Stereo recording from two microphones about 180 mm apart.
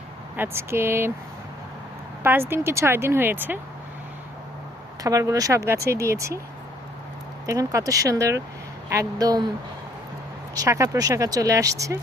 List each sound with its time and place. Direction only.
0.3 s speech: 15° right (ahead or behind)
2.5 s speech: 15° right (ahead or behind)
5.0 s speech: 20° right (ahead or behind)
7.4 s speech: 20° right (ahead or behind)
10.5 s speech: 20° right (ahead or behind)